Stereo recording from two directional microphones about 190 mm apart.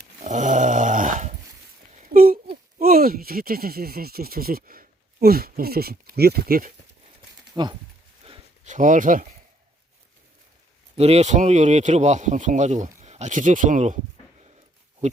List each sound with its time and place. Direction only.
0.2 s dog: 40° right (ahead or behind)
2.0 s speech: 50° right (ahead or behind)
7.5 s speech: 25° right (ahead or behind)
8.2 s a sound: 35° right (ahead or behind)
10.9 s speech: 35° right (ahead or behind)